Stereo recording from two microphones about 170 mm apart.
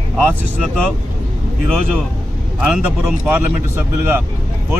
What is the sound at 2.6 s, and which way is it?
Speech, 5° right (ahead or behind).